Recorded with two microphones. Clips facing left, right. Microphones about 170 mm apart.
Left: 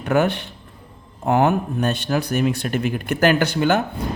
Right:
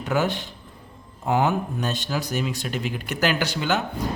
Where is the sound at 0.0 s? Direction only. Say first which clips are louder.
Left 5 dB; 60° left (ahead or behind).